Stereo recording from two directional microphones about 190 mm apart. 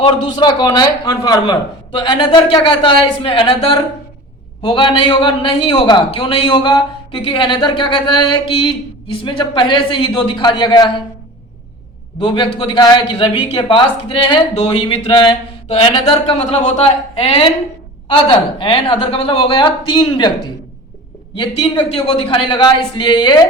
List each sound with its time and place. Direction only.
0.0 s a man's voice: 25° left (ahead or behind)
12.2 s a man's voice: 25° left (ahead or behind)
21.3 s a man's voice: 25° left (ahead or behind)